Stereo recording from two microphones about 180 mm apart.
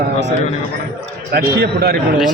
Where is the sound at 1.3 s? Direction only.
60° right (ahead or behind).